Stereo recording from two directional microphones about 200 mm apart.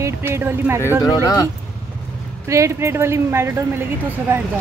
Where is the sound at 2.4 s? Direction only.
15° right (ahead or behind).